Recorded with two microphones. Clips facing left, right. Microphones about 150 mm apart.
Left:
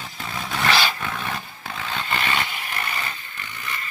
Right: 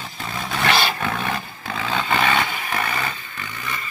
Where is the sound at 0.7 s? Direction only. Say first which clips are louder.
Right 2 dB; 60° right (ahead or behind); by 1.8 s 80° right.